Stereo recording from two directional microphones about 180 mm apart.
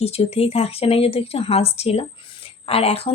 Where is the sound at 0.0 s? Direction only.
35° left (ahead or behind).